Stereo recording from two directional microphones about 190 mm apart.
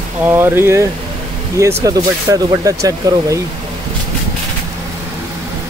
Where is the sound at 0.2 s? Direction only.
10° right (ahead or behind).